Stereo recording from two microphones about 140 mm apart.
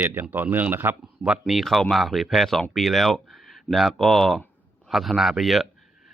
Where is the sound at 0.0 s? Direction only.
15° right (ahead or behind).